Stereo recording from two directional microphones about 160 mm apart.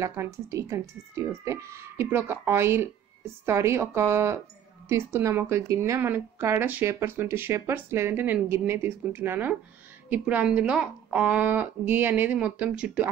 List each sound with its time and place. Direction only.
0.0 s speech: 20° right (ahead or behind)